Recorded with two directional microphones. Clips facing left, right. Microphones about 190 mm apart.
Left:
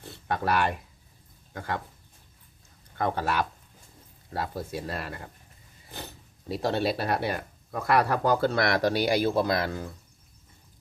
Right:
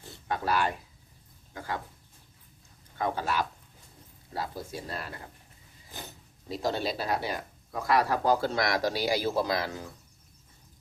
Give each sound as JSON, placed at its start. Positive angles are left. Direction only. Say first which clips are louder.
{"t": 0.3, "sound": "speech", "louder": "left 2 dB", "side_deg": 65}
{"t": 3.0, "sound": "speech", "louder": "left 2 dB", "side_deg": 60}
{"t": 6.5, "sound": "speech", "louder": "left 4 dB", "side_deg": 65}